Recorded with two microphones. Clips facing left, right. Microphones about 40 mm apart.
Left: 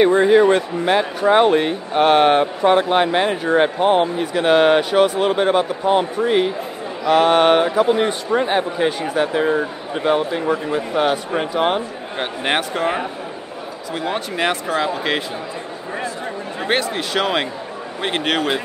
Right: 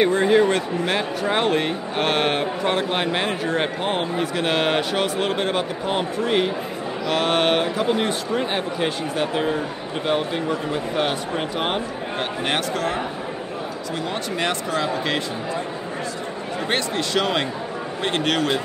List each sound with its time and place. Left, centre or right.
0.2 s speech: centre
10.0 s a man's voice: centre
12.2 s speech: centre
14.0 s speech: centre
16.6 s speech: centre